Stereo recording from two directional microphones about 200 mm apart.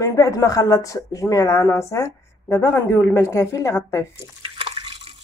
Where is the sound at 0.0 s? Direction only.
15° left (ahead or behind).